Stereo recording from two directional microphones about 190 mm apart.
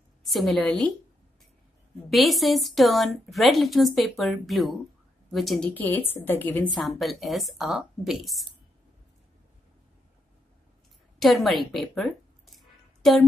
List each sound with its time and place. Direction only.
0.2 s a woman's voice: centre (ahead or behind)
2.0 s a woman's voice: centre (ahead or behind)
11.1 s a woman's voice: centre (ahead or behind)
12.5 s a sound: centre (ahead or behind)